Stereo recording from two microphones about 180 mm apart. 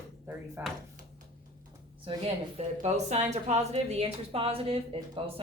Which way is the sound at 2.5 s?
40° right (ahead or behind).